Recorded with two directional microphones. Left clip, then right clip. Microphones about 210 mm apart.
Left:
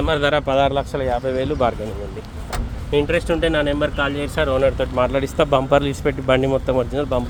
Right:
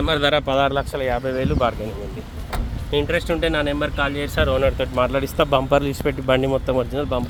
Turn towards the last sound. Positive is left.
turn(degrees=0)  # may be behind; listen again after turning